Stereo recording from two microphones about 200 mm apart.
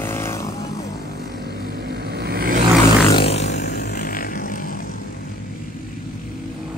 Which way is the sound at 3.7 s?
55° left (ahead or behind).